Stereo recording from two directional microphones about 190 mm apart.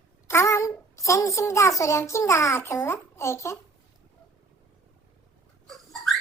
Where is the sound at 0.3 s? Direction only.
15° left (ahead or behind).